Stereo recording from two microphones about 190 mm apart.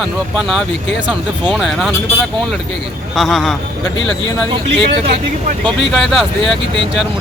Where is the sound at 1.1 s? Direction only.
5° right (ahead or behind).